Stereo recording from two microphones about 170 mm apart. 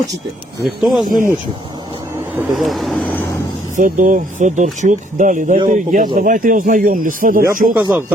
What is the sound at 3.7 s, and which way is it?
Speech, 50° right (ahead or behind).